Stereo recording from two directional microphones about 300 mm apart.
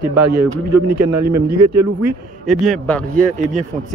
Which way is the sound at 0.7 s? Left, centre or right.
Right.